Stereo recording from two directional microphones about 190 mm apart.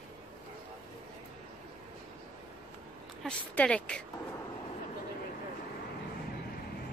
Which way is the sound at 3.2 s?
5° left (ahead or behind).